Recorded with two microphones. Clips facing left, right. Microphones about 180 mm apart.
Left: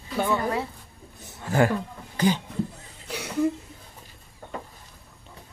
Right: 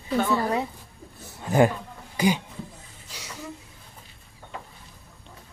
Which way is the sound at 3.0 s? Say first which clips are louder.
Left 10 dB; 60° left (ahead or behind).